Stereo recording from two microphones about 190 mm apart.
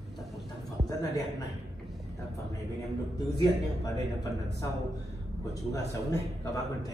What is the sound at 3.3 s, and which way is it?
Speech, 20° left (ahead or behind).